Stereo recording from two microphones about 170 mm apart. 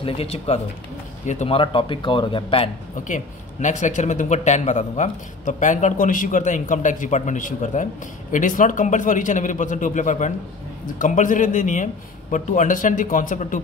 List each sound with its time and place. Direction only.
0.0 s speech: 35° left (ahead or behind)
3.6 s a man's voice: 45° left (ahead or behind)